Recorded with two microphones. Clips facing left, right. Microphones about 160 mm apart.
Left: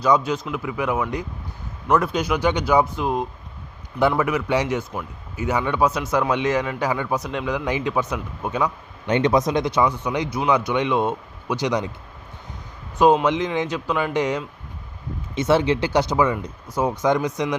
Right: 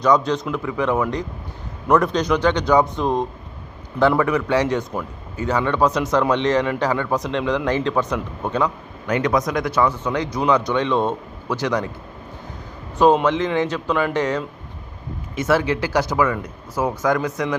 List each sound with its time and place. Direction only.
0.0 s a man's voice: 5° left (ahead or behind)
9.0 s a man's voice: 25° left (ahead or behind)
13.0 s a man's voice: 10° left (ahead or behind)
15.4 s speech: 25° left (ahead or behind)